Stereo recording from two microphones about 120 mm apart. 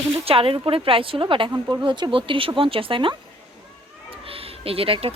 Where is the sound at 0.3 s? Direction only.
50° right (ahead or behind).